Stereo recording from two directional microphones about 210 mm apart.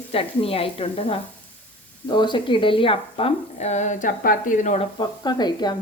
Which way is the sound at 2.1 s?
20° left (ahead or behind).